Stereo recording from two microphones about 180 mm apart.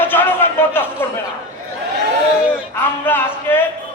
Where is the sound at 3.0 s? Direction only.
10° left (ahead or behind).